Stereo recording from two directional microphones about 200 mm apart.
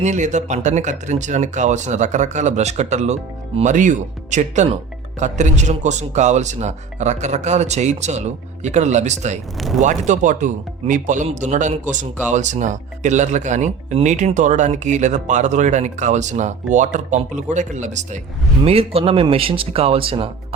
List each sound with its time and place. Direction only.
0.0 s speech: 35° right (ahead or behind)
9.6 s speech: centre (ahead or behind)
9.8 s speech: 35° right (ahead or behind)